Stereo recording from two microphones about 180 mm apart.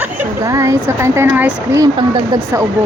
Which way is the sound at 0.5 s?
15° right (ahead or behind).